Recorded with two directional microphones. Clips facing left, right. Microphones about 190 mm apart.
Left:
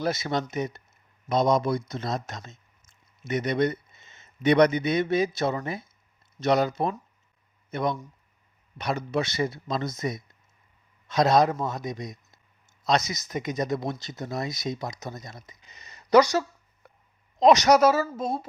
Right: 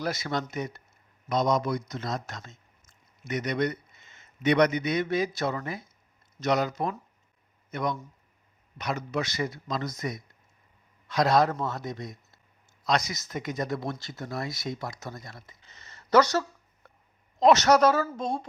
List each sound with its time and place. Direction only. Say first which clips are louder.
0.0 s a woman's voice: left 3 dB; 25° left (ahead or behind); by 18.4 s 5° left (ahead or behind)